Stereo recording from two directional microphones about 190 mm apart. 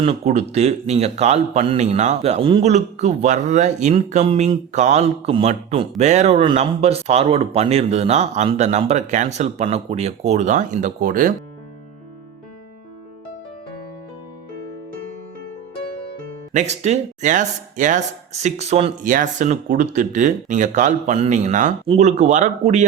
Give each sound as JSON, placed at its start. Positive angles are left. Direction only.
{"t": 0.0, "sound": "a man's voice", "side_deg": -35}
{"t": 16.5, "sound": "a man's voice", "side_deg": -35}